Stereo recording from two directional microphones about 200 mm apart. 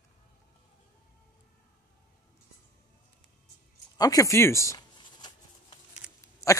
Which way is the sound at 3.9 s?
15° left (ahead or behind).